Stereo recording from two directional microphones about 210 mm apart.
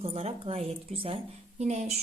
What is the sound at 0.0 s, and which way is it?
A woman's voice, 30° right (ahead or behind).